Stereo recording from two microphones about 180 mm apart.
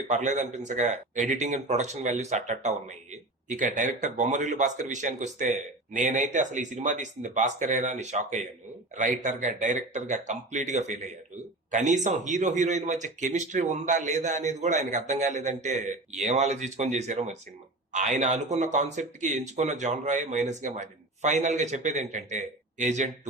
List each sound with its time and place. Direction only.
0.1 s a man's voice: 40° right (ahead or behind)